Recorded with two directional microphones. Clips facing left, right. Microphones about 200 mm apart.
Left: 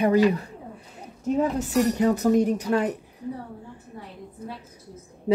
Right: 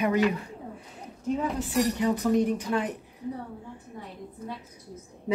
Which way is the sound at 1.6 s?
40° left (ahead or behind).